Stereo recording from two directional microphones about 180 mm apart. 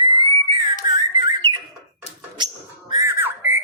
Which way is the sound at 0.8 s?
25° right (ahead or behind).